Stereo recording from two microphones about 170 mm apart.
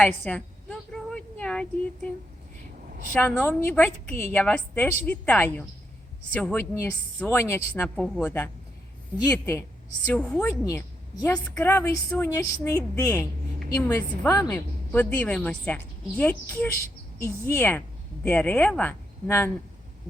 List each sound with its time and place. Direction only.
0.0 s a sound: 5° left (ahead or behind)
3.2 s a woman's voice: 10° left (ahead or behind)
10.1 s a woman's voice: 5° left (ahead or behind)
10.5 s a woman's voice: 15° left (ahead or behind)